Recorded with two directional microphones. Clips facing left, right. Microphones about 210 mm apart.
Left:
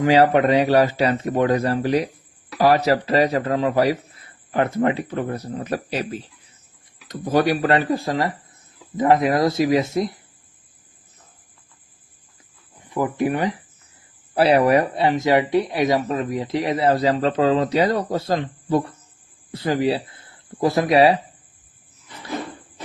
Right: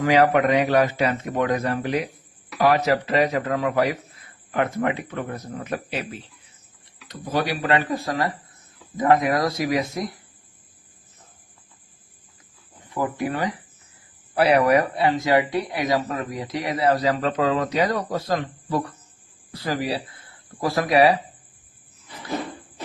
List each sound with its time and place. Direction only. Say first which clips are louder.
0.0 s speech: left 2 dB; 30° left (ahead or behind)
12.9 s speech: left 4 dB; 20° left (ahead or behind)